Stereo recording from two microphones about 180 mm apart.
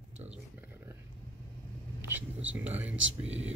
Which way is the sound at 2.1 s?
10° right (ahead or behind).